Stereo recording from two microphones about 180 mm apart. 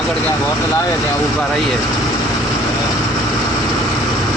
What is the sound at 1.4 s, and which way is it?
Speech, centre (ahead or behind).